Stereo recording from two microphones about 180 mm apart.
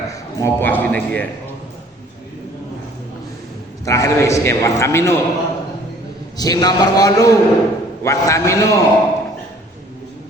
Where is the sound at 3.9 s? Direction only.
15° left (ahead or behind).